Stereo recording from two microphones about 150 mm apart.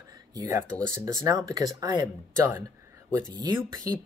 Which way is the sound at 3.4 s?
25° right (ahead or behind).